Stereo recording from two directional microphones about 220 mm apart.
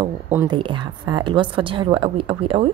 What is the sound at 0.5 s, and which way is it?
A woman's voice, 20° right (ahead or behind).